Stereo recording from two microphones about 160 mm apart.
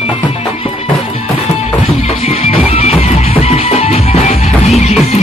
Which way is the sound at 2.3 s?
40° left (ahead or behind).